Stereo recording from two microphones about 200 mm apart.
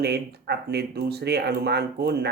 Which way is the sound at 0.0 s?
55° right (ahead or behind).